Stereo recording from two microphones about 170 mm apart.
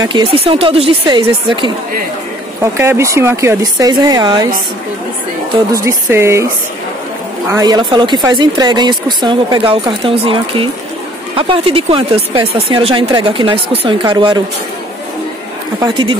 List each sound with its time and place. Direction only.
0.0 s speech: 25° right (ahead or behind)
2.6 s speech: 15° right (ahead or behind)
5.7 s speech: 15° right (ahead or behind)
7.5 s speech: 25° right (ahead or behind)
15.8 s speech: 30° right (ahead or behind)